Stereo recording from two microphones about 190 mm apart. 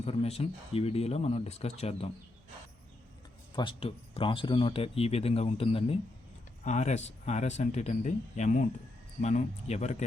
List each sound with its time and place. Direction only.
0.0 s speech: 35° left (ahead or behind)
3.5 s speech: 25° left (ahead or behind)